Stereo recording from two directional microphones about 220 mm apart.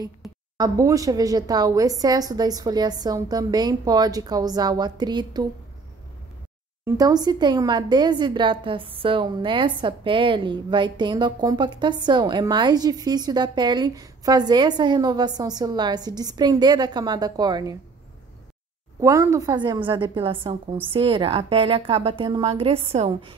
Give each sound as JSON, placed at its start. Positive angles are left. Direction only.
{"t": 0.6, "sound": "a woman's voice", "side_deg": -15}
{"t": 6.8, "sound": "speech", "side_deg": -15}
{"t": 18.9, "sound": "speech", "side_deg": -15}